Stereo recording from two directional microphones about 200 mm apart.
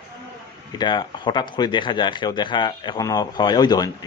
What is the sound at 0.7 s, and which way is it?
Speech, 20° left (ahead or behind).